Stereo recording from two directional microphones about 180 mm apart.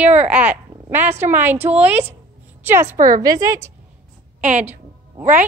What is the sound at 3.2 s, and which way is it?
Speech, 20° right (ahead or behind).